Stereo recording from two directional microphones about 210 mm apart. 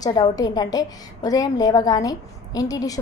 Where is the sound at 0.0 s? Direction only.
20° left (ahead or behind).